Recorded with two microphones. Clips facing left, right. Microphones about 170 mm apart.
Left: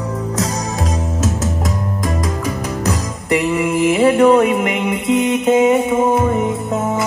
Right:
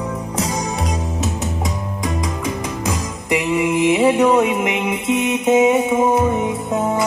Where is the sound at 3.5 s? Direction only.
Centre (ahead or behind).